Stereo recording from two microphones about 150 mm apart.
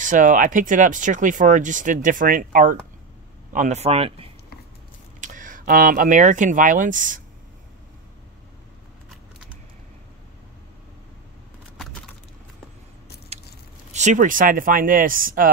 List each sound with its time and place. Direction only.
0.0 s speech: 60° right (ahead or behind)
3.5 s speech: 50° right (ahead or behind)
5.2 s speech: 60° right (ahead or behind)
13.3 s patter: 45° right (ahead or behind)
13.9 s speech: 55° right (ahead or behind)